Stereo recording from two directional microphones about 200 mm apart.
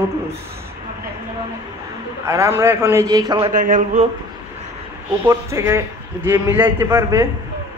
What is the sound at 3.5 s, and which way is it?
Speech, 40° right (ahead or behind).